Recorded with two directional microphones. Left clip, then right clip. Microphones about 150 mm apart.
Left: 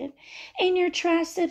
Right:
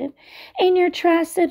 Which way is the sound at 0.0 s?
40° right (ahead or behind).